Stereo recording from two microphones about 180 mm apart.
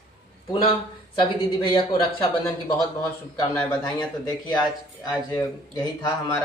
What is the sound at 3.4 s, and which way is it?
Speech, 20° left (ahead or behind).